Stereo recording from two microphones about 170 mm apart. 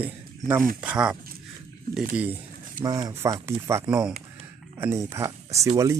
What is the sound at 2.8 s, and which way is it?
Speech, 20° right (ahead or behind).